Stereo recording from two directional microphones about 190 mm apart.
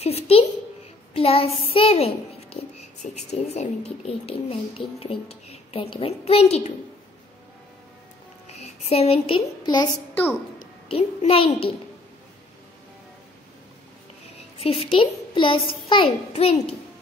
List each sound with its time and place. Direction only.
0.0 s a child's voice: 30° left (ahead or behind)
8.5 s a child's voice: 35° left (ahead or behind)
10.9 s a child's voice: 30° left (ahead or behind)
14.6 s a woman's voice: 30° left (ahead or behind)